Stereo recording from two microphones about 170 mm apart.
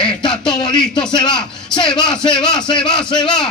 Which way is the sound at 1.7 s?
5° left (ahead or behind).